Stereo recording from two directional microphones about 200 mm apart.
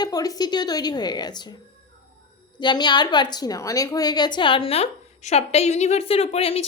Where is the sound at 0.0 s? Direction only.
20° left (ahead or behind).